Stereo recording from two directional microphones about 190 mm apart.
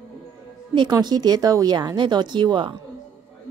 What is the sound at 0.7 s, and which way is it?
Speech, 20° right (ahead or behind).